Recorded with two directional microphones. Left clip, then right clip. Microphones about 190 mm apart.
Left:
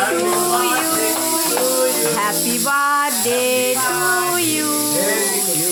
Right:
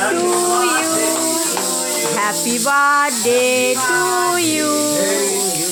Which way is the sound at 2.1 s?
10° right (ahead or behind).